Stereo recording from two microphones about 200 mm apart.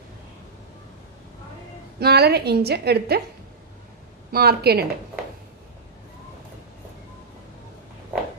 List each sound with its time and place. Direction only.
2.0 s a woman's voice: 55° right (ahead or behind)
4.3 s a woman's voice: 50° right (ahead or behind)